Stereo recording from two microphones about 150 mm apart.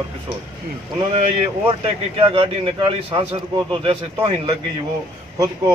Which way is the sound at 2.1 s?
35° right (ahead or behind).